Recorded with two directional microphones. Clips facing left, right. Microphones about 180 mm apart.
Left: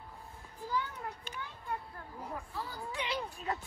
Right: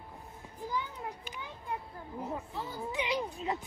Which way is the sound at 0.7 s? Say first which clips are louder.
Left 1 dB; 15° right (ahead or behind).